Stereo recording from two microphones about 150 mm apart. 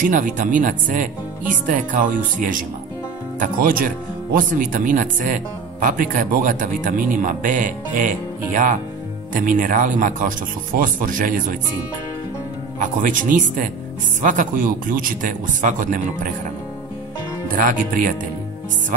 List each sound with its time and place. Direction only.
0.0 s speech: 65° right (ahead or behind)
9.3 s speech: 60° right (ahead or behind)
12.7 s speech: 60° right (ahead or behind)
17.5 s speech: 65° right (ahead or behind)